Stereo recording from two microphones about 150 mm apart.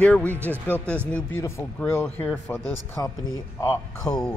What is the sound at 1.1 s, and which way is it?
Speech, 10° left (ahead or behind).